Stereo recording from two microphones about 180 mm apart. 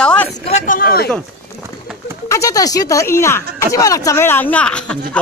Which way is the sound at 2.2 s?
15° left (ahead or behind).